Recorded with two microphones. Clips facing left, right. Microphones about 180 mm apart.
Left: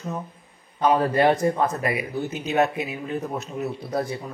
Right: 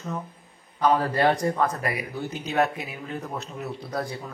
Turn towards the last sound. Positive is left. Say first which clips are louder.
# left 4 dB
turn(degrees=25)  # may be behind; listen again after turning